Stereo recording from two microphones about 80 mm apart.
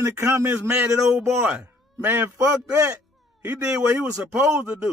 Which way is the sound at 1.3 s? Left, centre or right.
Right.